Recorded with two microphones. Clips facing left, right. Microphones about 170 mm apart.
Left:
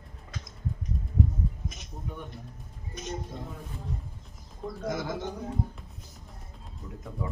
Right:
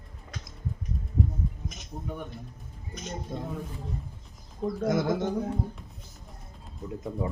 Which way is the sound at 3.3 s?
50° right (ahead or behind).